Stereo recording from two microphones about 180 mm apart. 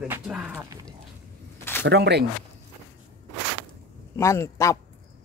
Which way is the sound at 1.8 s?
75° right (ahead or behind).